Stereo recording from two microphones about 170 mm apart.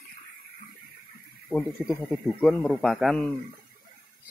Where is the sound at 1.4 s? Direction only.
Centre (ahead or behind).